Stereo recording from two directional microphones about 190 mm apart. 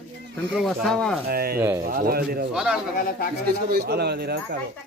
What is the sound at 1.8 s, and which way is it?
Speech, 50° right (ahead or behind).